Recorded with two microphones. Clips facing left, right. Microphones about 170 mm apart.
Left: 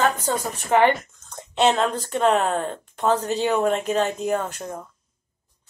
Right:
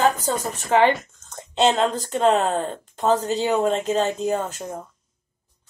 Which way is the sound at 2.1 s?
20° right (ahead or behind).